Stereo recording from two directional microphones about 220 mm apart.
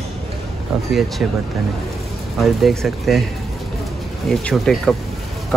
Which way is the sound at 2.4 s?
Centre (ahead or behind).